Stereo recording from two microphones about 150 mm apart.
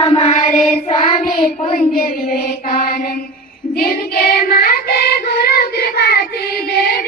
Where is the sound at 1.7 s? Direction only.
85° left.